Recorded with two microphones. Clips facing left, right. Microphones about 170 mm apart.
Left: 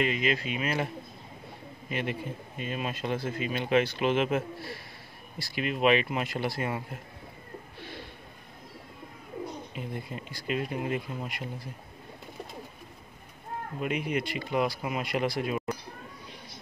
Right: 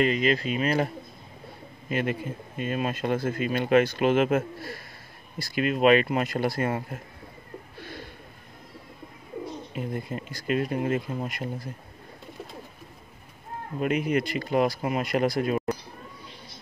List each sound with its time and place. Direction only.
0.0 s speech: 40° right (ahead or behind)
1.9 s speech: 45° right (ahead or behind)
9.8 s speech: 45° right (ahead or behind)
14.0 s speech: 40° right (ahead or behind)